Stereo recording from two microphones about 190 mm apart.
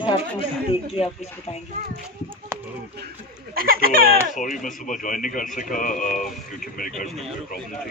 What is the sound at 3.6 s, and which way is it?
Speech, 50° right (ahead or behind).